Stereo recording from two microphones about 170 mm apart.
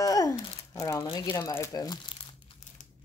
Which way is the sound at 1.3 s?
15° left (ahead or behind).